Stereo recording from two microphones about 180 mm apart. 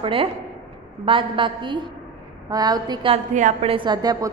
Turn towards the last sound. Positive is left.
turn(degrees=-25)  # may be behind; listen again after turning